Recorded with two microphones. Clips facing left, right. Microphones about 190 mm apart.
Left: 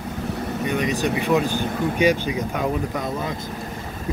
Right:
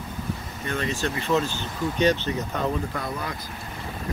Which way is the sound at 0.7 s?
15° left (ahead or behind).